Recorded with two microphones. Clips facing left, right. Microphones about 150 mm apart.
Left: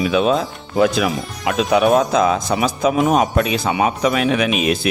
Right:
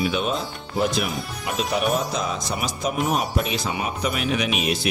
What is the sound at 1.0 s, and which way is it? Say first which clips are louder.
A man's voice: left 8 dB; 90° left.